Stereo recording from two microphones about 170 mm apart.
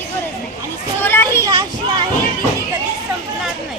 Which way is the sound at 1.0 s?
15° left (ahead or behind).